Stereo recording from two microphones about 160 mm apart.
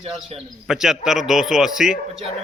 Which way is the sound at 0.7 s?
5° right (ahead or behind).